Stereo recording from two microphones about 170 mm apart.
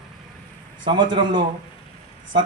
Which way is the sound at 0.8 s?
25° right (ahead or behind).